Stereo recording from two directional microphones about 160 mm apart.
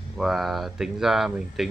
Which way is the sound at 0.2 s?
Centre (ahead or behind).